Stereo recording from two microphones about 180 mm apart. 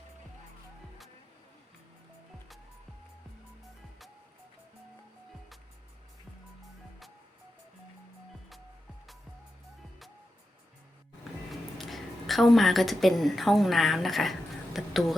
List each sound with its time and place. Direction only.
11.8 s a woman's voice: centre (ahead or behind)